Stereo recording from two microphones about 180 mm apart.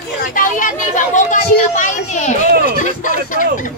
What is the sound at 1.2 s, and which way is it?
Chatter, 45° left (ahead or behind).